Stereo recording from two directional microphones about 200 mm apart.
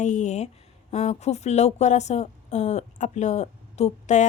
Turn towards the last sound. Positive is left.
turn(degrees=35)  # may be behind; listen again after turning